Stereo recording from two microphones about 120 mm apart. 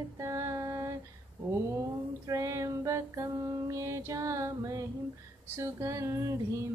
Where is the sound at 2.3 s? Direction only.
25° right (ahead or behind).